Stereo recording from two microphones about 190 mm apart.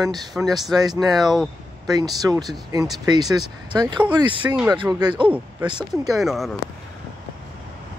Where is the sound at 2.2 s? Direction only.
20° right (ahead or behind).